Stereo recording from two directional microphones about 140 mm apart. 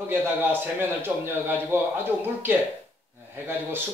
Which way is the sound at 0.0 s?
15° right (ahead or behind).